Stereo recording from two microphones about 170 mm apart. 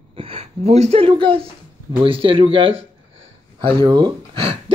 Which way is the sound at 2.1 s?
30° right (ahead or behind).